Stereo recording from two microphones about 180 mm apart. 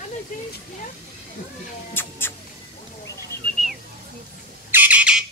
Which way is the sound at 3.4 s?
5° left (ahead or behind).